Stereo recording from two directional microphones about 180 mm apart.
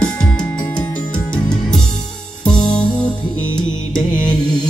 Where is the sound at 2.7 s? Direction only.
5° left (ahead or behind).